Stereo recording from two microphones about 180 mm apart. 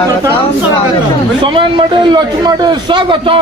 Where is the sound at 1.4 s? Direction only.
30° right (ahead or behind).